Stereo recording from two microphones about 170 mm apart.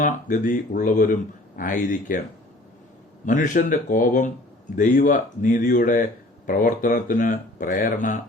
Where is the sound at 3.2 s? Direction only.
50° left (ahead or behind).